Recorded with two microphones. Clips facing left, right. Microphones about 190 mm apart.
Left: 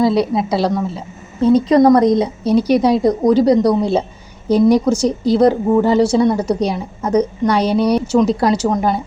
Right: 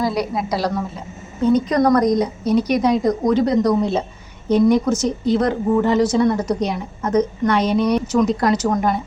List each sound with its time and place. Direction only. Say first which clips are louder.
0.0 s a woman's voice: left 6 dB; 25° left (ahead or behind)
7.0 s a woman's voice: left 2 dB; 10° left (ahead or behind)
7.4 s a woman's voice: left 3 dB; 35° left (ahead or behind)